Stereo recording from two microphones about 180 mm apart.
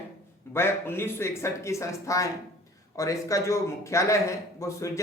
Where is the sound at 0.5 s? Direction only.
15° left (ahead or behind).